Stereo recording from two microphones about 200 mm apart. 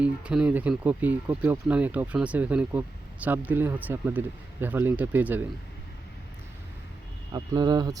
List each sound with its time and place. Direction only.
0.0 s speech: 5° right (ahead or behind)
7.3 s speech: 20° right (ahead or behind)